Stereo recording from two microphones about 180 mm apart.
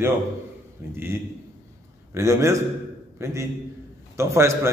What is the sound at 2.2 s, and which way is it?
A man's voice, 15° right (ahead or behind).